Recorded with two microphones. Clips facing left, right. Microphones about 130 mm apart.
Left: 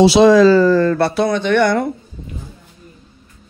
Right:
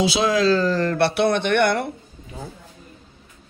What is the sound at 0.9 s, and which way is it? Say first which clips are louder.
Speech: left 3 dB; 65° right (ahead or behind).